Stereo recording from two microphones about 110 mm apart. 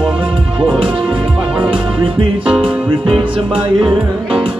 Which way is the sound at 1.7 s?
55° right (ahead or behind).